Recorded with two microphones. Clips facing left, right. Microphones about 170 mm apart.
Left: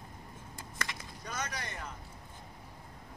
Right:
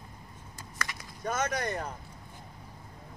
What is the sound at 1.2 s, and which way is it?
Speech, 50° right (ahead or behind).